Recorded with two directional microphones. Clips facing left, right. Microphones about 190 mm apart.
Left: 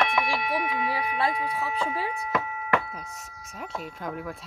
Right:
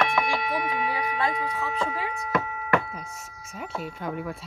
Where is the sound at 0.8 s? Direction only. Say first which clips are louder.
Even; 30° left (ahead or behind).